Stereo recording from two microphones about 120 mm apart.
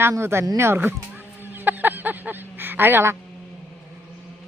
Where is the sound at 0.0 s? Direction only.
20° right (ahead or behind).